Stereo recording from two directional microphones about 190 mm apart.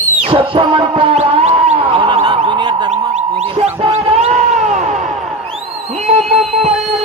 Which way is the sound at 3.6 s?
35° right (ahead or behind).